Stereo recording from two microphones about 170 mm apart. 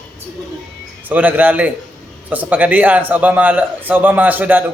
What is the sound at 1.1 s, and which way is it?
A man's voice, 10° right (ahead or behind).